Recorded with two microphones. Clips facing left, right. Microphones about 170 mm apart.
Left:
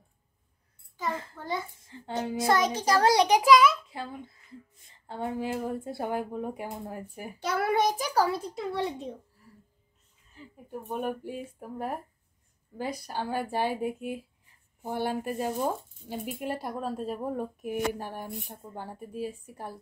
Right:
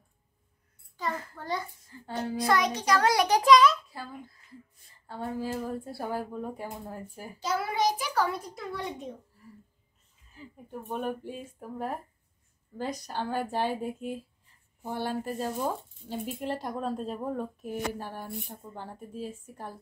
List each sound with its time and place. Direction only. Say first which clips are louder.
0.9 s a child's voice: left 1 dB; 20° left (ahead or behind)
3.3 s speech: even; 5° left (ahead or behind)
3.9 s speech: left 3 dB; 20° left (ahead or behind)
7.3 s a child's voice: left 3 dB; 60° left (ahead or behind)
8.1 s speech: left 3 dB; 35° left (ahead or behind)
10.3 s a woman's voice: left 1 dB; centre (ahead or behind)
10.8 s speech: left 1 dB; 10° left (ahead or behind)